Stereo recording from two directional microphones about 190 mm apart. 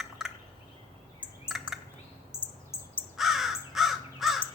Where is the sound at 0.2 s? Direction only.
Centre (ahead or behind).